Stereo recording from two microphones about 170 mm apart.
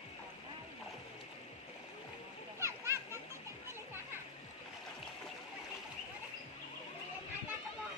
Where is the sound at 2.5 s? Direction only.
15° right (ahead or behind).